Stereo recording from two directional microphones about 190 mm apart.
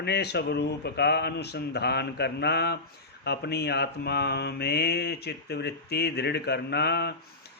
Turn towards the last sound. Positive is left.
turn(degrees=60)  # may be behind; listen again after turning